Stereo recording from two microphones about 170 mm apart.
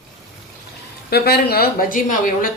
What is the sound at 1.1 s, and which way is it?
Speech, 65° left (ahead or behind).